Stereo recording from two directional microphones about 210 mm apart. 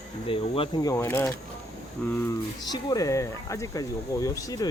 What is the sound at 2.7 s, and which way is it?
Speech, 15° left (ahead or behind).